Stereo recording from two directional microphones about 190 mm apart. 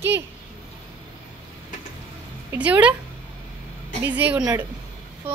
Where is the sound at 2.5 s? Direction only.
10° right (ahead or behind).